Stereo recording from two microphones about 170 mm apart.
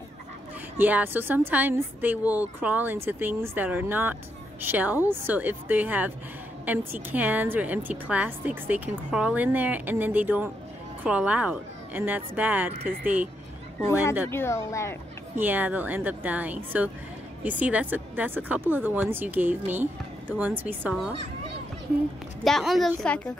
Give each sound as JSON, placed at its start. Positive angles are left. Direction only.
{"t": 0.7, "sound": "speech", "side_deg": -10}
{"t": 13.7, "sound": "speech", "side_deg": 15}
{"t": 15.3, "sound": "speech", "side_deg": -10}
{"t": 22.4, "sound": "a woman's voice", "side_deg": 0}